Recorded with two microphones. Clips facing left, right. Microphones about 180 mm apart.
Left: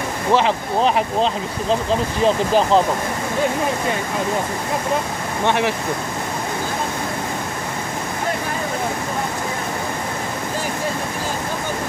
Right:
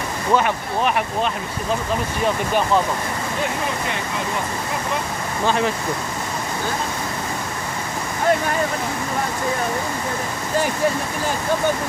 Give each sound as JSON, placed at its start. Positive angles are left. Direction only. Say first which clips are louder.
{"t": 0.3, "sound": "speech", "louder": "left 2 dB", "side_deg": 25}
{"t": 5.5, "sound": "speech", "louder": "left 1 dB", "side_deg": 75}